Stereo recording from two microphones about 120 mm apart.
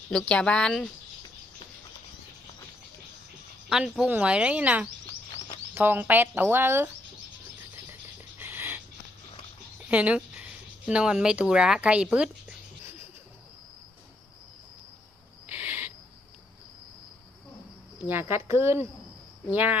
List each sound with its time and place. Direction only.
0.1 s speech: 10° left (ahead or behind)
3.7 s speech: 5° right (ahead or behind)
8.4 s rodents: 20° right (ahead or behind)
9.9 s speech: 10° right (ahead or behind)
15.4 s owl: 15° right (ahead or behind)
18.1 s speech: 20° right (ahead or behind)